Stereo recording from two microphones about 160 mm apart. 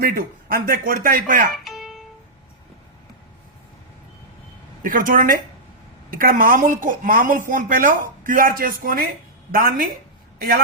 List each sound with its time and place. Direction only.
0.0 s speech: 65° right (ahead or behind)
1.5 s music: centre (ahead or behind)
4.8 s a man's voice: 60° right (ahead or behind)